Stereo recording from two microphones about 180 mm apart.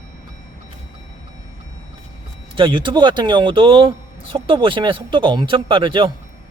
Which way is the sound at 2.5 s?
25° right (ahead or behind).